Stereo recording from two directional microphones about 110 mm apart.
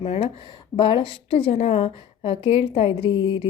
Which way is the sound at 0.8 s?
50° left (ahead or behind).